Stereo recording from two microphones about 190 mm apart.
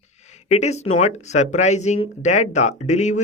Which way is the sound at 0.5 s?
35° left (ahead or behind).